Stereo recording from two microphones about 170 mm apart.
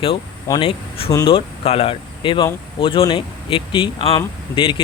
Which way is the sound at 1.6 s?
35° left (ahead or behind).